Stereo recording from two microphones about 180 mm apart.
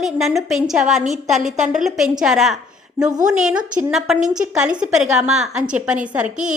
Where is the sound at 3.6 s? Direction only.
45° right (ahead or behind).